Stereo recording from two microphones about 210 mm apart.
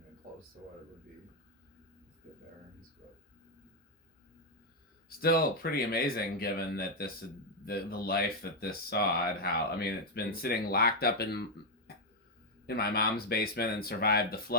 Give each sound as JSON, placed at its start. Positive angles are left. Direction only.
{"t": 5.0, "sound": "speech", "side_deg": 45}